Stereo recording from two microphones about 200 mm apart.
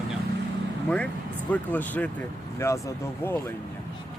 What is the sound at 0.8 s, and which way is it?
Speech, 5° left (ahead or behind).